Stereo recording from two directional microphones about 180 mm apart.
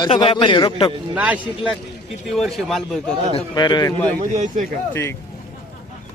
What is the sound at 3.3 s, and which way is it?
Speech, 25° left (ahead or behind).